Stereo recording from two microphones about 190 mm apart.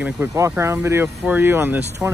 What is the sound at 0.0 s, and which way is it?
Speech, 15° right (ahead or behind).